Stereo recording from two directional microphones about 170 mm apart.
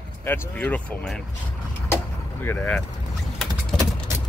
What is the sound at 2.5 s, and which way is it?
Speech, 10° left (ahead or behind).